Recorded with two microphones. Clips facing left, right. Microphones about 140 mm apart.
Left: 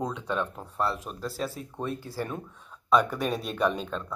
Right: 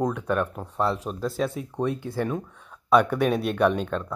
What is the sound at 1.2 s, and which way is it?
Speech, centre (ahead or behind).